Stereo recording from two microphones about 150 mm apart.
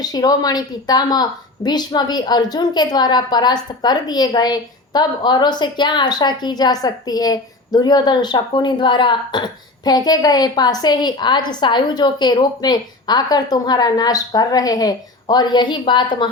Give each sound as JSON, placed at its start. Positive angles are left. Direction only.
{"t": 0.0, "sound": "a woman's voice", "side_deg": 25}